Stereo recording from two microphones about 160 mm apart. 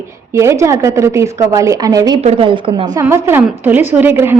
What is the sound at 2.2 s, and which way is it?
Speech, 40° right (ahead or behind).